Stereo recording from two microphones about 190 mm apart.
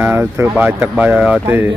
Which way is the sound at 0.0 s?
10° right (ahead or behind).